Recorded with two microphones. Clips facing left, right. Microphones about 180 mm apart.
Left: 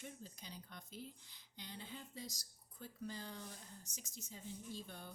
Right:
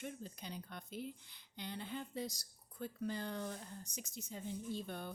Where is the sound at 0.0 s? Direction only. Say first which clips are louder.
Right 6 dB; 60° right (ahead or behind).